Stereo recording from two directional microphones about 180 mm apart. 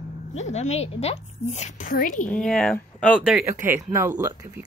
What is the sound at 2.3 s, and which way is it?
Speech, 5° left (ahead or behind).